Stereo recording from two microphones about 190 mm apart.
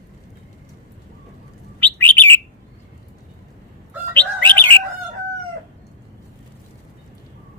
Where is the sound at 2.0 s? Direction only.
10° left (ahead or behind).